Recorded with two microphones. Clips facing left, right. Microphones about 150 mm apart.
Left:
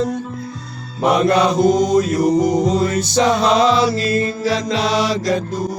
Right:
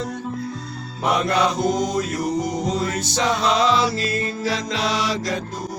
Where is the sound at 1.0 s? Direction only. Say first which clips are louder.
Left 6 dB; 40° left (ahead or behind).